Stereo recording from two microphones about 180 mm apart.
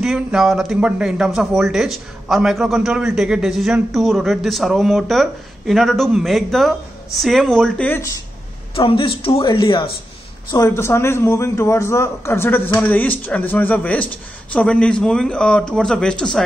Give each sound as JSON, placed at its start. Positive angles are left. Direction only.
{"t": 0.0, "sound": "a man's voice", "side_deg": 0}
{"t": 8.7, "sound": "a man's voice", "side_deg": 30}
{"t": 10.5, "sound": "a man's voice", "side_deg": 15}